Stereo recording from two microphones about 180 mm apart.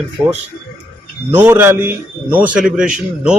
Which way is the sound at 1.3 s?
10° right (ahead or behind).